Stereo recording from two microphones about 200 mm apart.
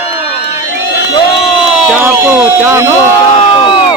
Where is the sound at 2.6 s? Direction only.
10° right (ahead or behind).